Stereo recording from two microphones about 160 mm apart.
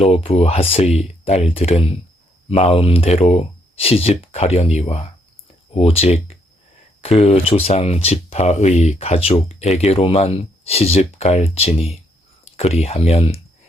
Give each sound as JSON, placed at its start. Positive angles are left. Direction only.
{"t": 0.0, "sound": "speech", "side_deg": 35}